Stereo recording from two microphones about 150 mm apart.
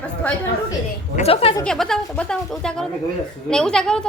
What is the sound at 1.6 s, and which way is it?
A woman's voice, 5° left (ahead or behind).